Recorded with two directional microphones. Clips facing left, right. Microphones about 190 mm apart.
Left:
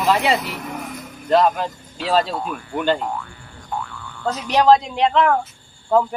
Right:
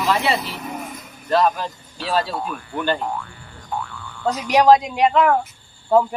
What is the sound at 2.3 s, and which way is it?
Speech, centre (ahead or behind).